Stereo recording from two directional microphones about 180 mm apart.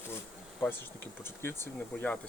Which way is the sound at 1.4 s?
15° left (ahead or behind).